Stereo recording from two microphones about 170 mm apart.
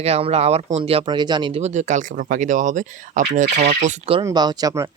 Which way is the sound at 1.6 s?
45° right (ahead or behind).